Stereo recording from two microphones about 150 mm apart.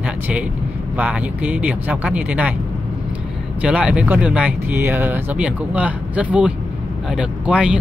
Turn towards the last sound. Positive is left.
turn(degrees=-5)  # may be behind; listen again after turning